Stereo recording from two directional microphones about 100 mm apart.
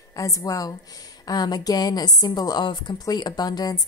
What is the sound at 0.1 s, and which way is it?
A woman's voice, 35° left (ahead or behind).